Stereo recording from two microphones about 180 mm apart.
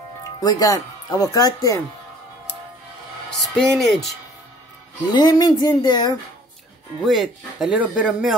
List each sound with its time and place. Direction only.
0.4 s speech: 20° left (ahead or behind)
3.3 s a man's voice: 5° left (ahead or behind)
5.1 s speech: 20° left (ahead or behind)
7.1 s a man's voice: centre (ahead or behind)